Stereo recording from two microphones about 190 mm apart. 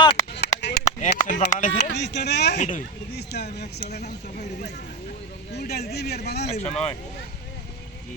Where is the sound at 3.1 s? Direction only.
60° left (ahead or behind).